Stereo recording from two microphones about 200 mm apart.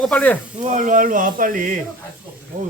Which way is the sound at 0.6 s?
40° right (ahead or behind).